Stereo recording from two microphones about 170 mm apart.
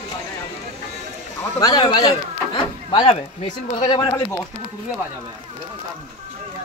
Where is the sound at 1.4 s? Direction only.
20° left (ahead or behind).